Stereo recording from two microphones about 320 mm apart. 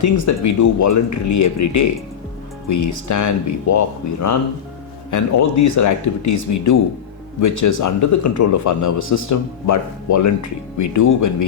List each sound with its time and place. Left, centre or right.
0.0 s speech: left